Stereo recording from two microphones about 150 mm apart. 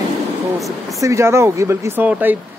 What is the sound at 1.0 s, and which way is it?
Speech, 20° right (ahead or behind).